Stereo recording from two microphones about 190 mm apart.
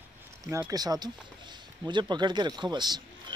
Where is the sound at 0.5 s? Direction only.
15° right (ahead or behind).